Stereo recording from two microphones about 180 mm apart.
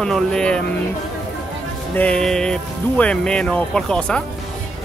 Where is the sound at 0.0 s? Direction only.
5° left (ahead or behind).